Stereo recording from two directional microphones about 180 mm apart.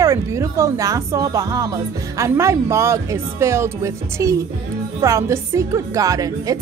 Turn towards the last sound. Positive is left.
turn(degrees=-20)  # may be behind; listen again after turning